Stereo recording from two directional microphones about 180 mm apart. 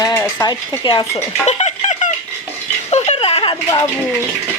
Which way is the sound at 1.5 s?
40° left (ahead or behind).